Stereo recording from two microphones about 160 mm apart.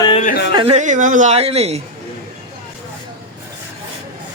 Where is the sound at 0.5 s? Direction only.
40° right (ahead or behind).